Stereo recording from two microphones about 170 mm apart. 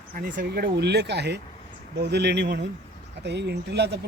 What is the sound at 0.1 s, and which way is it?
Speech, 60° right (ahead or behind).